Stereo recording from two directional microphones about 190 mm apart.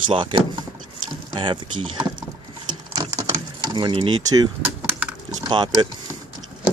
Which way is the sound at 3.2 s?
20° right (ahead or behind).